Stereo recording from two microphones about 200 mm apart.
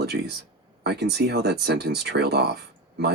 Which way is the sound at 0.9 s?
55° right (ahead or behind).